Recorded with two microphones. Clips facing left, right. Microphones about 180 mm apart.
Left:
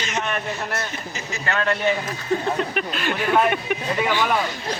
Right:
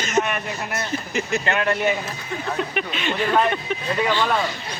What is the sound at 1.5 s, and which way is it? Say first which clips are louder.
Speech: left 1 dB; 15° right (ahead or behind).